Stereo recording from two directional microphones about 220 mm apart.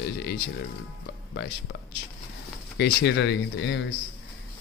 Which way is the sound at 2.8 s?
55° left (ahead or behind).